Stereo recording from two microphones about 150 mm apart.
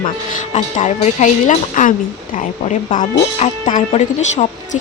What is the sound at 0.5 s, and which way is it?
A woman's voice, 50° left (ahead or behind).